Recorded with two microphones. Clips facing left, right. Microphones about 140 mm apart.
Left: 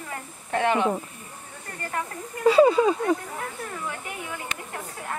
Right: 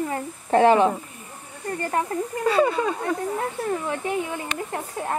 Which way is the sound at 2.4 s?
15° left (ahead or behind).